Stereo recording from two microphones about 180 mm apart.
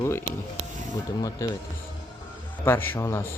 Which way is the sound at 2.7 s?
10° left (ahead or behind).